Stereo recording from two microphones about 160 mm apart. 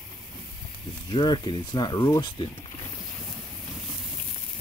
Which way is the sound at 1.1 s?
30° left (ahead or behind).